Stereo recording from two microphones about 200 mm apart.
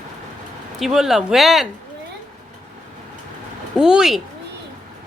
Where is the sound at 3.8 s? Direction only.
5° right (ahead or behind).